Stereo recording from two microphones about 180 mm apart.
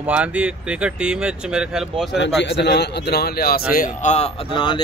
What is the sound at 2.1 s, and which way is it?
A man's voice, 75° left (ahead or behind).